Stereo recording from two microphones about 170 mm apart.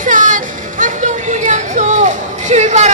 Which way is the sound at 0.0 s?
50° right (ahead or behind).